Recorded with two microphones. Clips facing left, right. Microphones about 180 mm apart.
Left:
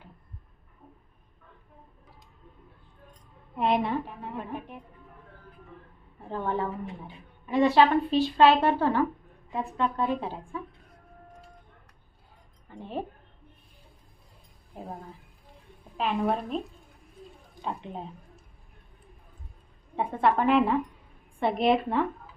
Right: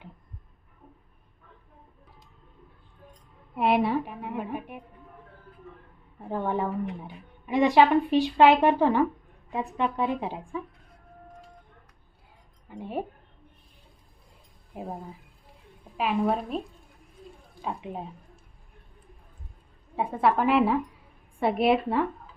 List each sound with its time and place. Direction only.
3.5 s a woman's voice: 5° right (ahead or behind)
6.2 s speech: 15° right (ahead or behind)
12.6 s speech: 10° right (ahead or behind)
16.0 s a woman's voice: 5° right (ahead or behind)
17.6 s speech: 5° right (ahead or behind)
20.0 s a woman's voice: 5° right (ahead or behind)